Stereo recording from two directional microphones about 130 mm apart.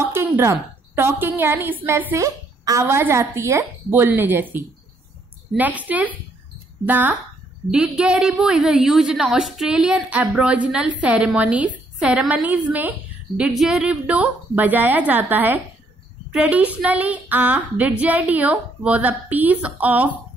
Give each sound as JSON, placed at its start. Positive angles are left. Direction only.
{"t": 0.0, "sound": "a woman's voice", "side_deg": -20}